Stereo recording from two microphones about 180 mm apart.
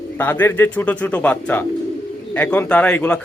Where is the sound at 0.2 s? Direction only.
10° left (ahead or behind).